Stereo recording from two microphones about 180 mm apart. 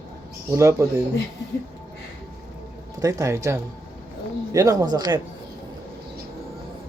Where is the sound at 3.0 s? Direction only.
20° right (ahead or behind).